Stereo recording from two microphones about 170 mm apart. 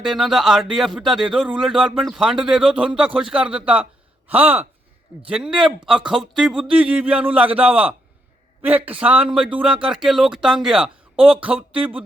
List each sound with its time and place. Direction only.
0.0 s a man's voice: centre (ahead or behind)